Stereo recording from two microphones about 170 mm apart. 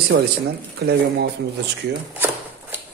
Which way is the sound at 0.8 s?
75° right (ahead or behind).